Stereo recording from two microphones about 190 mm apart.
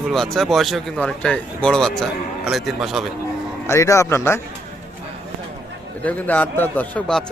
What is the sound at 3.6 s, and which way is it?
Speech, 15° left (ahead or behind).